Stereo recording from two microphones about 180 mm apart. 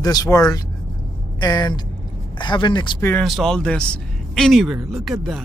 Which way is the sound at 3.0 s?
10° left (ahead or behind).